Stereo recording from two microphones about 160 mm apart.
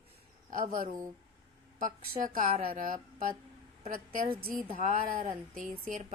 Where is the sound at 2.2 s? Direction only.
55° right (ahead or behind).